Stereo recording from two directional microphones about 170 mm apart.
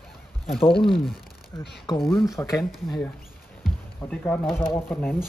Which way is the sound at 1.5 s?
15° left (ahead or behind).